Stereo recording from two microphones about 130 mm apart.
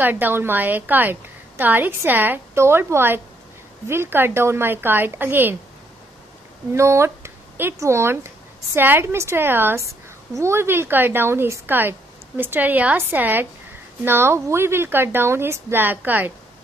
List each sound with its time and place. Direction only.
0.0 s a woman's voice: 15° right (ahead or behind)
6.7 s a woman's voice: 20° right (ahead or behind)